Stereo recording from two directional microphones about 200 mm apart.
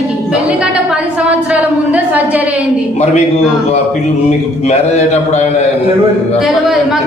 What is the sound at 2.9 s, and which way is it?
Speech, 35° left (ahead or behind).